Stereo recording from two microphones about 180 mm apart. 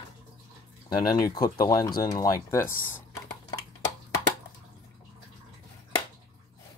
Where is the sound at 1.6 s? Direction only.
20° left (ahead or behind).